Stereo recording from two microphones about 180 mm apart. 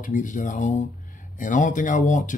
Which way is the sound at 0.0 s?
45° left (ahead or behind).